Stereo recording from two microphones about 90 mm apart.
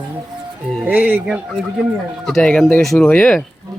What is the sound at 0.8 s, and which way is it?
Speech, 20° right (ahead or behind).